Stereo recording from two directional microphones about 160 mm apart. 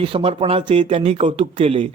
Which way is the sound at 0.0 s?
35° right (ahead or behind).